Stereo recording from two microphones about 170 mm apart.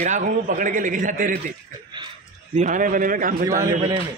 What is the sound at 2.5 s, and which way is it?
Speech, 45° right (ahead or behind).